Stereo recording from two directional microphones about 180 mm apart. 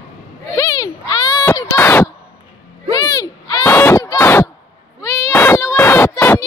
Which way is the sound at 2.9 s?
20° left (ahead or behind).